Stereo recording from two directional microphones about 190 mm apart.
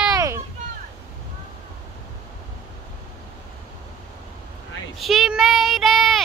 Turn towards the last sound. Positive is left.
turn(degrees=0)  # may be behind; listen again after turning